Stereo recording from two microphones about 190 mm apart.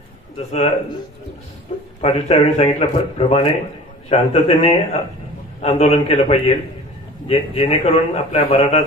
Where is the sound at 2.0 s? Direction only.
30° left (ahead or behind).